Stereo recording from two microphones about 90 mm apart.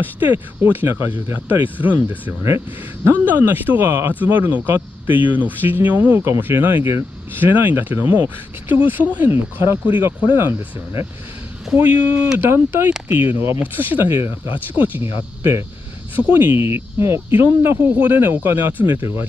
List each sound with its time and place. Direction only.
0.7 s speech: 25° right (ahead or behind)
15.1 s speech: 30° right (ahead or behind)